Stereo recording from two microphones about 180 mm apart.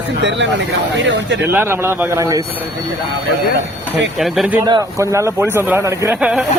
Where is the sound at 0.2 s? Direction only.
90° right.